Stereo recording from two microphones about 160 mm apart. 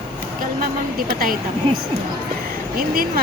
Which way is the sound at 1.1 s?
65° right (ahead or behind).